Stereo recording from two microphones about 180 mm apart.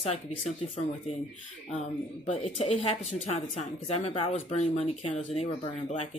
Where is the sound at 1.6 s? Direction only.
35° left (ahead or behind).